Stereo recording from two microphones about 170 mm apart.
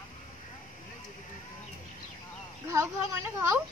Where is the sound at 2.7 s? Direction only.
15° right (ahead or behind).